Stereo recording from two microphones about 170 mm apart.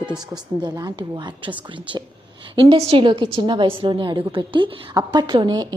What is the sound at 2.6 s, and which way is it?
A woman's voice, 35° right (ahead or behind).